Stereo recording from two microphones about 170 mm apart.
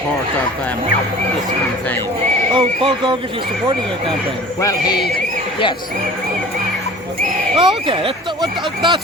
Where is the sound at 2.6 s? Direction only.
30° right (ahead or behind).